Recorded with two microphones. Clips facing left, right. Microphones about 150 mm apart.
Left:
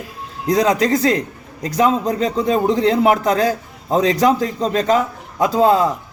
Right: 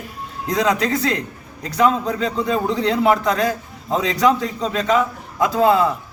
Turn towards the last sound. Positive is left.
turn(degrees=35)  # may be behind; listen again after turning